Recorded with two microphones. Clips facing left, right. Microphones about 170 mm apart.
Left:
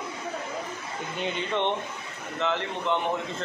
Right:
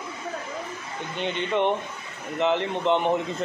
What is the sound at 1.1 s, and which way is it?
Speech, 5° left (ahead or behind).